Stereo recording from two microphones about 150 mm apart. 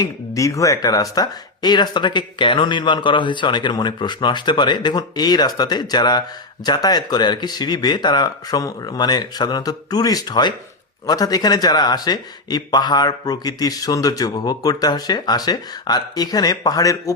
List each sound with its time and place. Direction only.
0.0 s speech: 20° left (ahead or behind)